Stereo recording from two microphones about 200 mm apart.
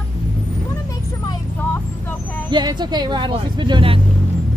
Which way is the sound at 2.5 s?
20° right (ahead or behind).